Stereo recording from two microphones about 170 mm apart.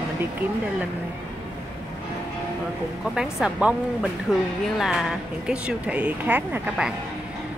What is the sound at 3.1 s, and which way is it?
Speech, 5° right (ahead or behind).